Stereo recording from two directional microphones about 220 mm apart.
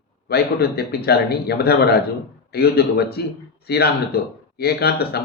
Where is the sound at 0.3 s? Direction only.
45° left (ahead or behind).